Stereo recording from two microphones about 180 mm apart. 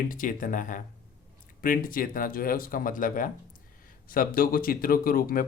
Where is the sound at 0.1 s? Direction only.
50° left (ahead or behind).